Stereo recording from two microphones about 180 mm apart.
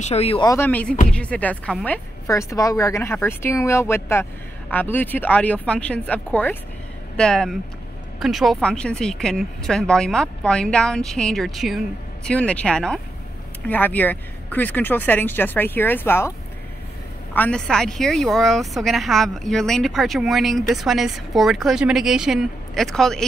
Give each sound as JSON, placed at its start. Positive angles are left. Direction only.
{"t": 0.0, "sound": "speech", "side_deg": 35}
{"t": 0.5, "sound": "a woman's voice", "side_deg": 10}